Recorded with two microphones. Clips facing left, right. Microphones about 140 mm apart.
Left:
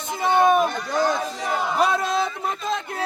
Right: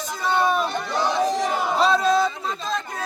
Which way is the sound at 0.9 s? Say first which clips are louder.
Left 2 dB; 50° left (ahead or behind).